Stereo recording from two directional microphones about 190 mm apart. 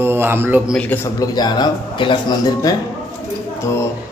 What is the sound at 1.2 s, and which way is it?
Speech, 20° left (ahead or behind).